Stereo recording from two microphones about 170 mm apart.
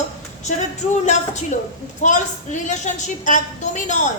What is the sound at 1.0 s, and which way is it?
A woman's voice, 45° left (ahead or behind).